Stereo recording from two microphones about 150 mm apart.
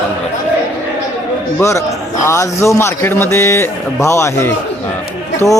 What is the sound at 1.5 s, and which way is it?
Speech, 20° left (ahead or behind).